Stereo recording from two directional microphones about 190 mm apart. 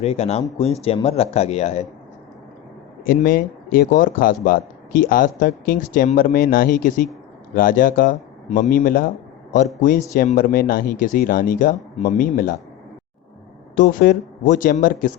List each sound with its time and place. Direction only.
0.0 s speech: 35° left (ahead or behind)
3.1 s speech: 50° left (ahead or behind)
10.2 s speech: 45° left (ahead or behind)
13.7 s speech: 50° left (ahead or behind)